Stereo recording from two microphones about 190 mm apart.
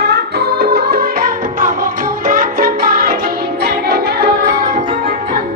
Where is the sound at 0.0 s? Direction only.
60° right (ahead or behind).